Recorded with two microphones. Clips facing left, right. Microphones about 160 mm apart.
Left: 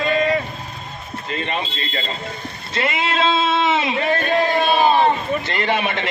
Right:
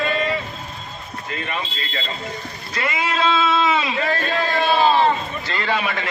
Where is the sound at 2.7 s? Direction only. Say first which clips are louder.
Left 2 dB; 25° left (ahead or behind).